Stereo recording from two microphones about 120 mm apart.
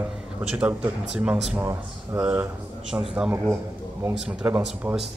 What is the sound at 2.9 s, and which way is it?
Speech, 5° right (ahead or behind).